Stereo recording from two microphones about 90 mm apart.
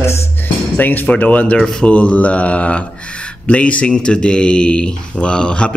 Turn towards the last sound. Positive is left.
turn(degrees=10)  # may be behind; listen again after turning